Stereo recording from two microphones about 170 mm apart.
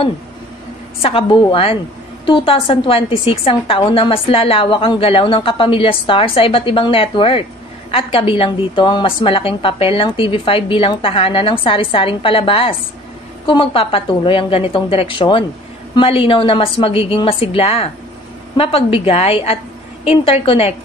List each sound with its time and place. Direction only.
1.0 s a woman's voice: 30° left (ahead or behind)